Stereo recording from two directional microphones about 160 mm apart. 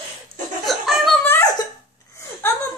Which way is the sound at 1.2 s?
15° left (ahead or behind).